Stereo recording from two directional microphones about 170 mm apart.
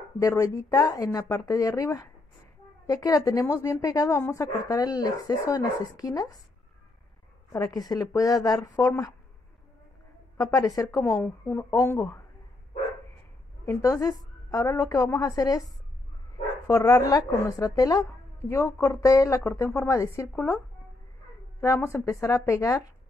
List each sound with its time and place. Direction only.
0.2 s a woman's voice: 20° left (ahead or behind)
7.5 s a woman's voice: 20° left (ahead or behind)
10.3 s a woman's voice: 20° left (ahead or behind)
13.7 s a woman's voice: 15° left (ahead or behind)
16.6 s speech: 20° left (ahead or behind)
21.5 s speech: 15° left (ahead or behind)